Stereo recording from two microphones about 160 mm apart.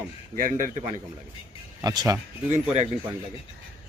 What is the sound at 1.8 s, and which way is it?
Speech, 25° right (ahead or behind).